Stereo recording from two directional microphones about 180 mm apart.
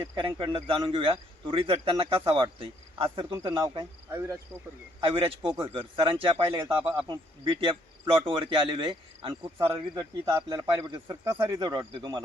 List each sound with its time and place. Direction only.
0.0 s a man's voice: 30° right (ahead or behind)